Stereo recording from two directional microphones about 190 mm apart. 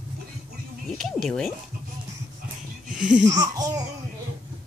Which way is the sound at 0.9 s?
Centre (ahead or behind).